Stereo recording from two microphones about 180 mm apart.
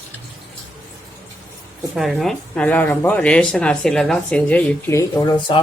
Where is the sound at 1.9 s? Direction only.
Centre (ahead or behind).